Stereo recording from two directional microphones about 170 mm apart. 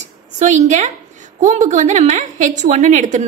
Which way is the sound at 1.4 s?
45° right (ahead or behind).